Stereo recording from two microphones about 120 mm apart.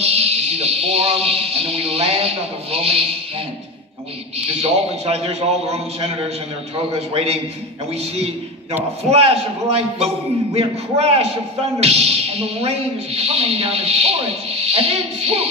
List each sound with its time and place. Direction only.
0.0 s speech: 60° right (ahead or behind)
4.5 s speech: 60° right (ahead or behind)
9.1 s speech: 55° right (ahead or behind)